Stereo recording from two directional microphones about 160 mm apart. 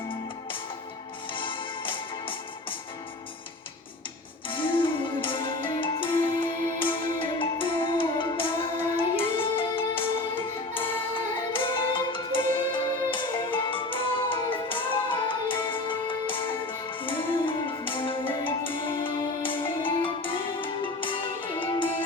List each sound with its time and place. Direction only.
1.3 s music: 30° left (ahead or behind)
4.4 s music: 30° left (ahead or behind)
11.6 s music: 30° left (ahead or behind)